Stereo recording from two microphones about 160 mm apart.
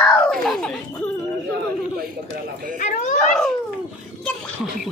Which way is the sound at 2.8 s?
50° left (ahead or behind).